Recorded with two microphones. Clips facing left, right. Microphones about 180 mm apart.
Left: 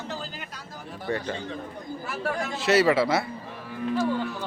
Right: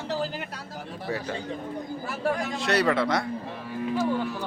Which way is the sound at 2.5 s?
5° left (ahead or behind).